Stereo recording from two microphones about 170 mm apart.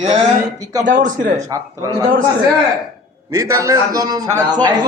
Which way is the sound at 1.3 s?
20° right (ahead or behind).